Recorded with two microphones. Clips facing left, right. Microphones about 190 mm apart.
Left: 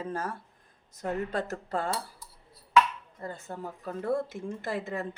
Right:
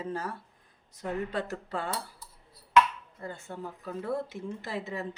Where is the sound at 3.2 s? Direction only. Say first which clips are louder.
Left 1 dB; 40° left (ahead or behind).